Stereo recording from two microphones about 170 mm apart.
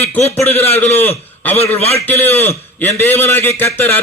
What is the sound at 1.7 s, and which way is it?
Speech, 35° left (ahead or behind).